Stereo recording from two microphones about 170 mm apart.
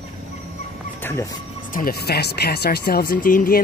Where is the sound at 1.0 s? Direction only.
20° left (ahead or behind).